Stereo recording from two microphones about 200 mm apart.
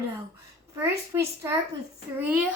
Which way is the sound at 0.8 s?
15° right (ahead or behind).